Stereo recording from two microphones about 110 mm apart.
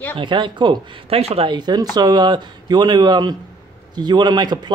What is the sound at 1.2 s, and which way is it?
Speech, 65° right (ahead or behind).